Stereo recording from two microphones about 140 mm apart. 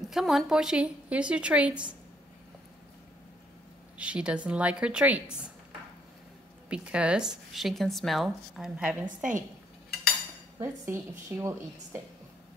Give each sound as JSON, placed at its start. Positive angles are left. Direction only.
{"t": 0.1, "sound": "a woman's voice", "side_deg": 0}
{"t": 4.0, "sound": "a woman's voice", "side_deg": -10}
{"t": 6.7, "sound": "speech", "side_deg": -10}
{"t": 10.6, "sound": "a woman's voice", "side_deg": -20}